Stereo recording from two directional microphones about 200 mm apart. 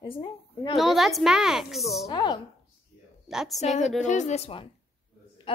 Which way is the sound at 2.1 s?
20° left (ahead or behind).